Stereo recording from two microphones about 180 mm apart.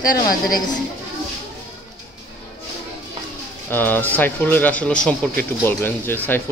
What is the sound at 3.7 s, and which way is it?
Speech, 10° left (ahead or behind).